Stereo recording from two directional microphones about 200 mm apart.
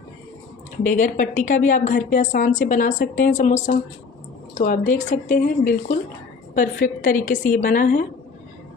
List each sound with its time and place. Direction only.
0.8 s a woman's voice: 40° left (ahead or behind)